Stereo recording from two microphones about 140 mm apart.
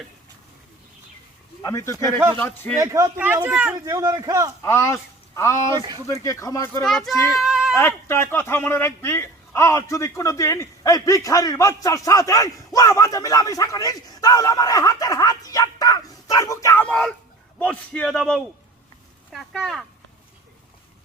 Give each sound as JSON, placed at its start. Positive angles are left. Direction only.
{"t": 1.6, "sound": "speech", "side_deg": 20}
{"t": 2.7, "sound": "a man's voice", "side_deg": -25}
{"t": 3.8, "sound": "a man's voice", "side_deg": -25}
{"t": 4.6, "sound": "speech", "side_deg": 20}
{"t": 6.8, "sound": "speech", "side_deg": 0}
{"t": 7.3, "sound": "a sound", "side_deg": -5}
{"t": 7.8, "sound": "speech", "side_deg": 15}
{"t": 16.8, "sound": "speech", "side_deg": 5}